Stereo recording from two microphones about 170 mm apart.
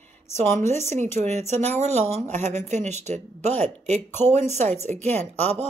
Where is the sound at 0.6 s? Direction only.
40° right (ahead or behind).